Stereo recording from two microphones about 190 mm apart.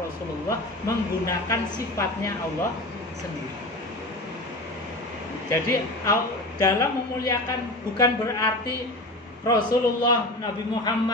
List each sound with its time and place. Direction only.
0.5 s a woman's voice: 15° left (ahead or behind)
5.5 s a woman's voice: 15° left (ahead or behind)
9.5 s a man's voice: 20° left (ahead or behind)